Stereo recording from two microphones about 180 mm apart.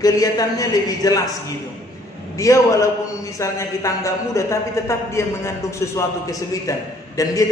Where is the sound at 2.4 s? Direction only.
15° left (ahead or behind).